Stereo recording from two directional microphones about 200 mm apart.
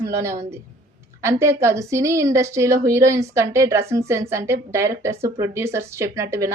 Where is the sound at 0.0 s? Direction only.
15° right (ahead or behind).